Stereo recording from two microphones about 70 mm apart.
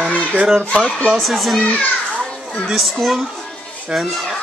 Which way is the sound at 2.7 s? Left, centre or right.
Centre.